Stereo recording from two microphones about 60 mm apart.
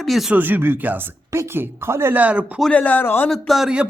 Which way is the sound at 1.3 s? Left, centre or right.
Right.